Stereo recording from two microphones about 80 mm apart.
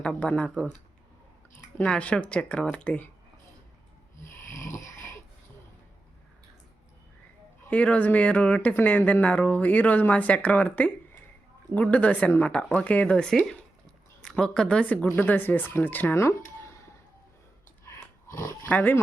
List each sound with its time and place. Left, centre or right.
0.0 s speech: centre
1.8 s speech: centre
4.2 s snoring: left
7.7 s speech: centre
16.1 s a sound: left
17.8 s a sound: left
18.7 s speech: left